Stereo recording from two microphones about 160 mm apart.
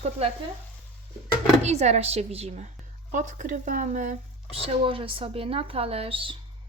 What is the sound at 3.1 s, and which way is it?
Speech, 55° right (ahead or behind).